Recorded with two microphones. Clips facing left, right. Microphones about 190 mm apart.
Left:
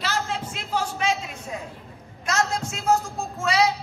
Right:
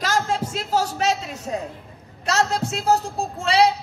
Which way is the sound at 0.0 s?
45° right (ahead or behind).